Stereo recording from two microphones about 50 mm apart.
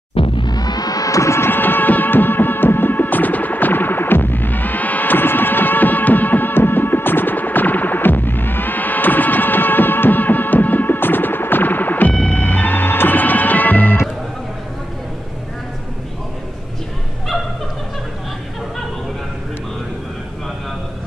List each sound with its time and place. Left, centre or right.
1.1 s music: left
1.4 s music: left